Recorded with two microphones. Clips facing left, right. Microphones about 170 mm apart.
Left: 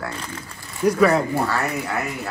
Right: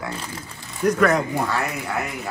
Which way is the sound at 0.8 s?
5° left (ahead or behind).